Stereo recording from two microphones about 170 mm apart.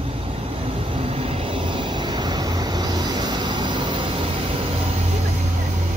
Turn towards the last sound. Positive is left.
turn(degrees=-25)  # may be behind; listen again after turning